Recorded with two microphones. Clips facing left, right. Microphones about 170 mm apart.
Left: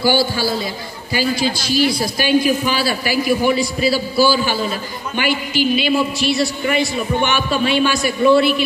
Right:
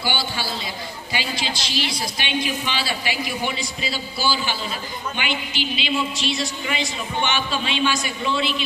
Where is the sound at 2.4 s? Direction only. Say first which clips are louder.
Left 9 dB; 60° left (ahead or behind).